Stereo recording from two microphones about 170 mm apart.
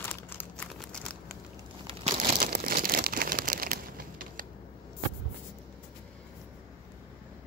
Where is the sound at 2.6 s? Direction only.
60° right (ahead or behind).